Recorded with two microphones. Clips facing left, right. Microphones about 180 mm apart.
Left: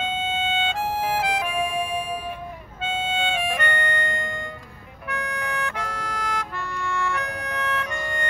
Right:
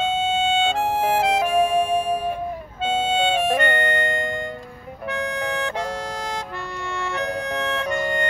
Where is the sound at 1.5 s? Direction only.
40° right (ahead or behind).